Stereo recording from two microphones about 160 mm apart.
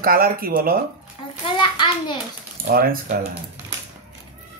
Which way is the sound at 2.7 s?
65° right (ahead or behind).